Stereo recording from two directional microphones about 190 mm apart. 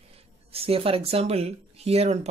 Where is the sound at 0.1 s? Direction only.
30° right (ahead or behind).